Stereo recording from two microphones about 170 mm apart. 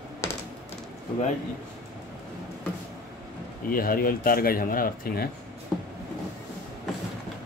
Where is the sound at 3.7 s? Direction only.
60° left (ahead or behind).